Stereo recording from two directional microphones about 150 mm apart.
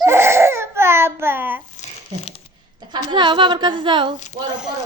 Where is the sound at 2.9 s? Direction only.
30° right (ahead or behind).